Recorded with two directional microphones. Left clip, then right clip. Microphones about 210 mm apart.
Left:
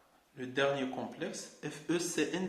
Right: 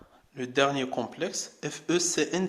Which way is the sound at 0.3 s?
50° right (ahead or behind).